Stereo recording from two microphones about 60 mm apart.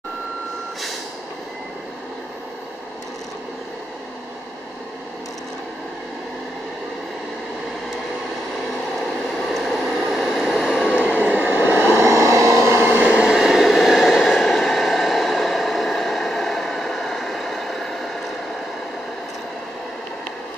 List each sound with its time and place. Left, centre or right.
9.3 s vehicle: centre
11.1 s vehicle: right
13.2 s vehicle: centre